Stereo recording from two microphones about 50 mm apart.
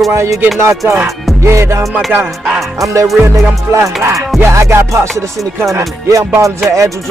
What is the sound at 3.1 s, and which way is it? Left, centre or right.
Music, right.